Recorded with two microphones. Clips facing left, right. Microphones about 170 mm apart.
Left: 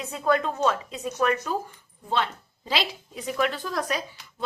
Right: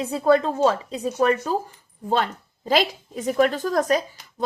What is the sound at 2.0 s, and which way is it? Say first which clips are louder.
A woman's voice: right 4 dB; 45° right (ahead or behind).